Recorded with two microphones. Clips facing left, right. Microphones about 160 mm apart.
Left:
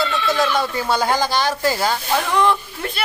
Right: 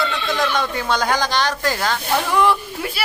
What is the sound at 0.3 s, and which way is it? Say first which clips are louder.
Speech: left 2 dB; 5° left (ahead or behind).